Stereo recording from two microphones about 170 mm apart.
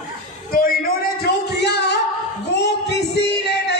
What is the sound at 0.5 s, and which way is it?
Speech, 60° left (ahead or behind).